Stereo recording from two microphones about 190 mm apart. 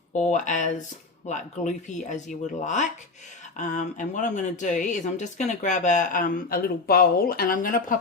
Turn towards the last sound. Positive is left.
turn(degrees=45)  # may be behind; listen again after turning